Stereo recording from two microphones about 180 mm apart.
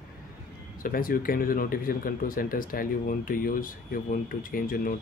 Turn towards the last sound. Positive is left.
turn(degrees=50)  # may be behind; listen again after turning